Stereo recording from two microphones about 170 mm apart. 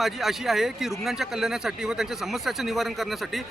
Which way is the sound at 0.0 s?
Centre (ahead or behind).